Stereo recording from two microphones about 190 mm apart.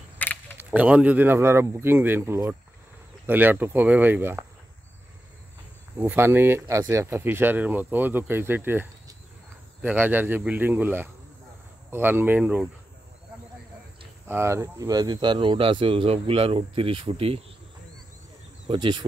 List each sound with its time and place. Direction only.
0.2 s a sound: 10° left (ahead or behind)
0.6 s speech: 5° right (ahead or behind)
5.9 s speech: 10° right (ahead or behind)
14.2 s speech: 15° right (ahead or behind); by 17.4 s 30° right (ahead or behind)
18.7 s speech: 25° right (ahead or behind)